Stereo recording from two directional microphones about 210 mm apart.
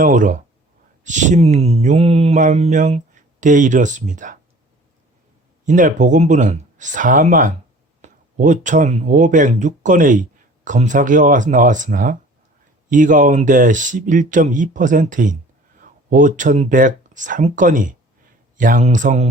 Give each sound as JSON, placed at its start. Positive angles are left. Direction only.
{"t": 0.0, "sound": "speech", "side_deg": -40}
{"t": 5.6, "sound": "speech", "side_deg": -35}